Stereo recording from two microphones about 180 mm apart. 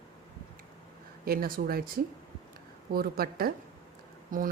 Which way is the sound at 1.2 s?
55° right (ahead or behind).